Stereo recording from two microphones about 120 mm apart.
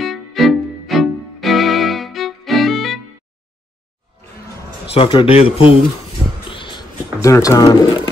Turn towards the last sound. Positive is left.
turn(degrees=30)  # may be behind; listen again after turning